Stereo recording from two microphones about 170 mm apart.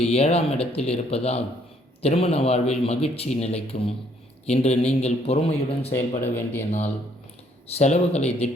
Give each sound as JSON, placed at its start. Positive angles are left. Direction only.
{"t": 0.0, "sound": "speech", "side_deg": 35}
{"t": 5.9, "sound": "speech", "side_deg": 15}
{"t": 6.7, "sound": "speech", "side_deg": 40}